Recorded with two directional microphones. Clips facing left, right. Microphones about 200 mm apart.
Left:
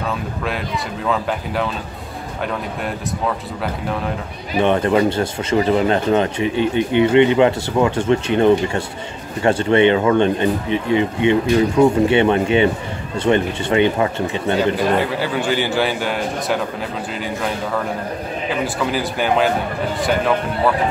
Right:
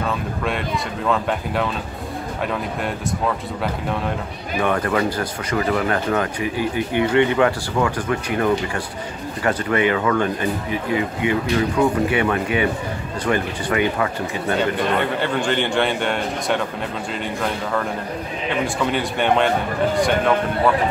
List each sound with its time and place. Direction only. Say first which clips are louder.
1.0 s a man's voice: even; centre (ahead or behind)
3.6 s a man's voice: left 1 dB; centre (ahead or behind)
4.6 s speech: left 5 dB; 25° left (ahead or behind)
14.8 s a man's voice: left 2 dB; 5° left (ahead or behind)